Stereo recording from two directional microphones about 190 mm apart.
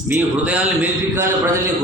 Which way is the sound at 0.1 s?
10° right (ahead or behind).